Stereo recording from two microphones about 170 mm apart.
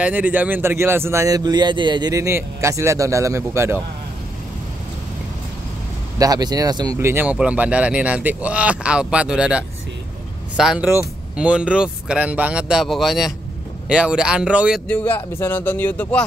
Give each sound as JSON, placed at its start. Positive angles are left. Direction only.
{"t": 0.0, "sound": "speech", "side_deg": -10}
{"t": 6.1, "sound": "speech", "side_deg": -20}
{"t": 14.9, "sound": "speech", "side_deg": 10}